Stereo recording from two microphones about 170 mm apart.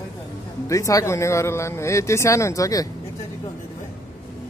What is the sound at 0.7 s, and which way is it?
Speech, 20° left (ahead or behind).